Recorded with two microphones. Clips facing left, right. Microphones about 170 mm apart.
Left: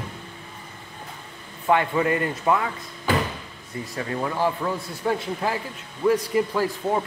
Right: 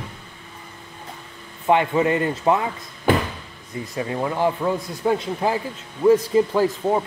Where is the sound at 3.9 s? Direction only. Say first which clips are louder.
Right 3 dB; 20° right (ahead or behind).